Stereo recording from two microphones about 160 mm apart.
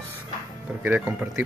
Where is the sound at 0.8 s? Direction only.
10° right (ahead or behind).